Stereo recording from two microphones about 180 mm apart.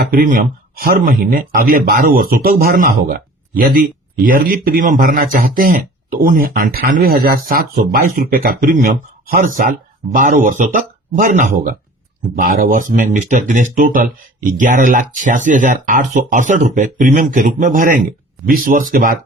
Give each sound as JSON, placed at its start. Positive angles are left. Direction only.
{"t": 0.0, "sound": "a man's voice", "side_deg": -55}